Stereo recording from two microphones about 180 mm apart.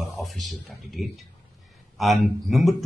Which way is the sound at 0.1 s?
Centre (ahead or behind).